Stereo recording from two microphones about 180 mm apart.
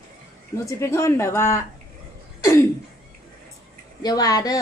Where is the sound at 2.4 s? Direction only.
15° left (ahead or behind).